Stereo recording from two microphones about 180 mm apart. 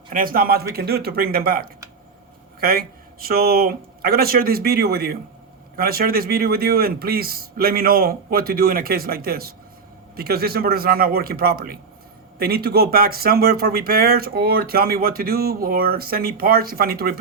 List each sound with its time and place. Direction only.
0.1 s speech: 50° right (ahead or behind)